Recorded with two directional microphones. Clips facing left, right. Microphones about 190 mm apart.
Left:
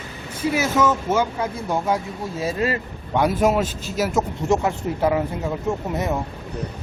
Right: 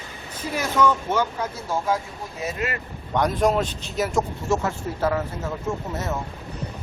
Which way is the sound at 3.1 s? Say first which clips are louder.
Left 2 dB; 5° left (ahead or behind).